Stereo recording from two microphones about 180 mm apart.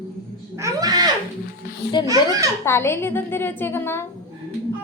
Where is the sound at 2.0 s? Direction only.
20° right (ahead or behind).